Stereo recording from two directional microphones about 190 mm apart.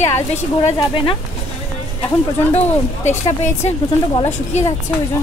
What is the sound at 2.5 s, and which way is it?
Speech, 35° left (ahead or behind).